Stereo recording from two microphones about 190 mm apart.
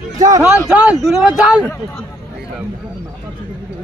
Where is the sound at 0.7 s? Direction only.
5° right (ahead or behind).